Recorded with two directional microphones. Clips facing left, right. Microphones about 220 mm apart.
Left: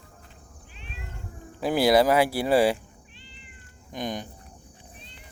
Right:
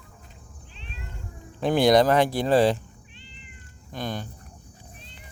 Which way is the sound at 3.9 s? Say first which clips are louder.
Even; 15° left (ahead or behind).